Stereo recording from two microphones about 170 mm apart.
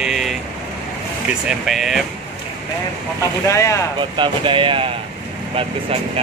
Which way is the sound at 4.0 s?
30° right (ahead or behind).